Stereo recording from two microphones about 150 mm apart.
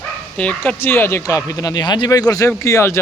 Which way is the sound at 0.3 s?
10° left (ahead or behind).